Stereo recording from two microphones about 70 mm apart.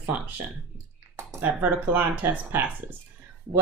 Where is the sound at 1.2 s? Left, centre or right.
Right.